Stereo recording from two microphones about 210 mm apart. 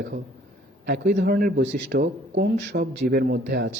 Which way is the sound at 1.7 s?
35° right (ahead or behind).